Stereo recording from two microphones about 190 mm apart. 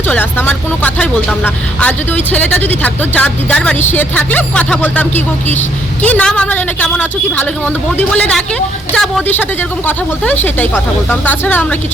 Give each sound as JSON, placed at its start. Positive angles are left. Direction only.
{"t": 0.1, "sound": "speech", "side_deg": 10}